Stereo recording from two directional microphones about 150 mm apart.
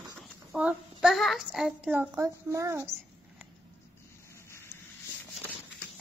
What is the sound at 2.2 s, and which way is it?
A child's voice, 20° right (ahead or behind).